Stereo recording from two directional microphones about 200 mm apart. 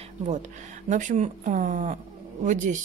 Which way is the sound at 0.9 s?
35° right (ahead or behind).